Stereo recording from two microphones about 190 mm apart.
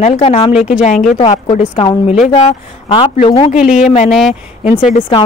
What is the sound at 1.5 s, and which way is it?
Speech, 25° left (ahead or behind).